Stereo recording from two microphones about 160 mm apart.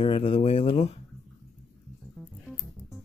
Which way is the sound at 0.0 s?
35° left (ahead or behind).